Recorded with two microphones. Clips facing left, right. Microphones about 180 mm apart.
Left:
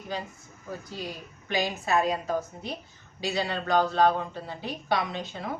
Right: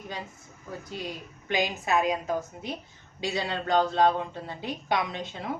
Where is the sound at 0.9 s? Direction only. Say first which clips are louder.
Right 1 dB; 20° right (ahead or behind).